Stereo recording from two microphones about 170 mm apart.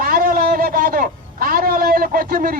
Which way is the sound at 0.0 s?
55° right (ahead or behind).